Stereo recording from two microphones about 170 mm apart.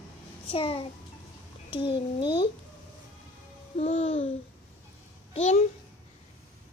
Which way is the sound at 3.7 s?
40° left (ahead or behind).